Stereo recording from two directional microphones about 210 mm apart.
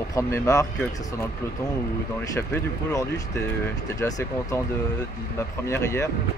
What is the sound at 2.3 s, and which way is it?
Speech, 15° left (ahead or behind).